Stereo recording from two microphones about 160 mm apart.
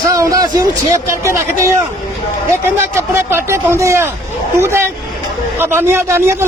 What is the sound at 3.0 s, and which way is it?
A man's voice, 15° right (ahead or behind).